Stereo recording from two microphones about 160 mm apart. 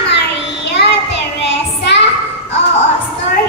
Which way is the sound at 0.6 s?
90° left.